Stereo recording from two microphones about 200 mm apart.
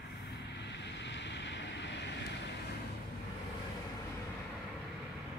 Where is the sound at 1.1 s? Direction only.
60° left (ahead or behind).